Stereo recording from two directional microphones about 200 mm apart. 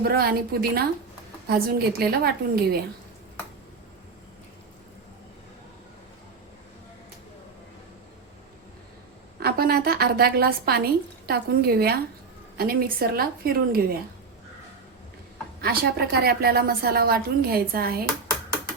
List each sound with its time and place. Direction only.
0.0 s a woman's voice: 50° right (ahead or behind)
9.4 s a woman's voice: 50° right (ahead or behind)
15.6 s a woman's voice: 50° right (ahead or behind)